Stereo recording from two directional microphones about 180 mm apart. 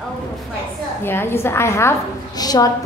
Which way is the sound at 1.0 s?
15° left (ahead or behind).